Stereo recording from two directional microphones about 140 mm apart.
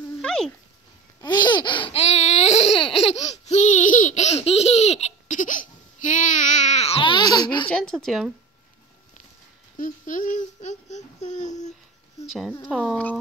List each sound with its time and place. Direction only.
0.2 s cat: 5° left (ahead or behind)
1.2 s laughter: 30° left (ahead or behind)
7.7 s speech: 5° left (ahead or behind)
9.8 s speech: 70° left (ahead or behind)
12.3 s speech: centre (ahead or behind)